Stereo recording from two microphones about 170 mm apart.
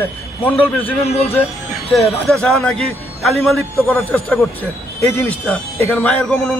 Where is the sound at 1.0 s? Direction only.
35° left (ahead or behind).